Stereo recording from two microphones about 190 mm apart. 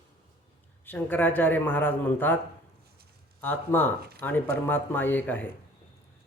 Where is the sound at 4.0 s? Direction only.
55° right (ahead or behind).